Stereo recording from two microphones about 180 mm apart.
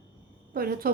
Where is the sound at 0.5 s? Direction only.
55° right (ahead or behind).